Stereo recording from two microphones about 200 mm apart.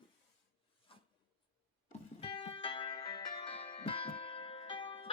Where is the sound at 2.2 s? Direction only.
30° left (ahead or behind).